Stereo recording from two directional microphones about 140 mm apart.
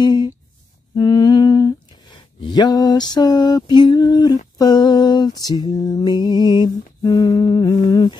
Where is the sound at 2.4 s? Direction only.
30° left (ahead or behind).